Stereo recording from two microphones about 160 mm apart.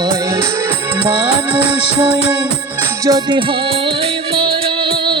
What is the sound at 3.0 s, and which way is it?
Music, 25° right (ahead or behind).